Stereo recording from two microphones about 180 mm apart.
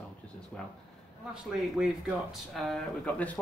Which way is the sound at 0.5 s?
5° left (ahead or behind).